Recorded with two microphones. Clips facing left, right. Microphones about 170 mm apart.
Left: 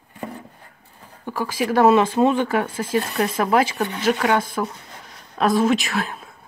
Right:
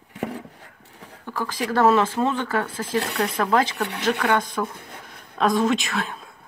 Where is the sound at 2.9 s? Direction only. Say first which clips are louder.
Left 2 dB; 70° right (ahead or behind).